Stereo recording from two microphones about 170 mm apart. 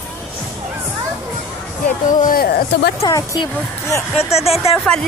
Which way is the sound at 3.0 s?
20° left (ahead or behind).